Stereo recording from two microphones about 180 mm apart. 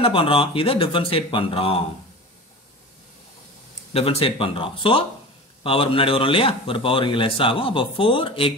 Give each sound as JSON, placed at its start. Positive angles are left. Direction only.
{"t": 0.0, "sound": "speech", "side_deg": 30}
{"t": 3.9, "sound": "speech", "side_deg": 35}